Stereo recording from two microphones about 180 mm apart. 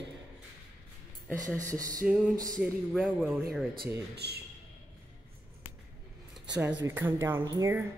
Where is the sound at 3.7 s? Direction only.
60° right (ahead or behind).